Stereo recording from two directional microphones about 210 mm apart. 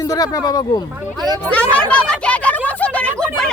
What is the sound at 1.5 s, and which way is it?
Speech, 5° left (ahead or behind).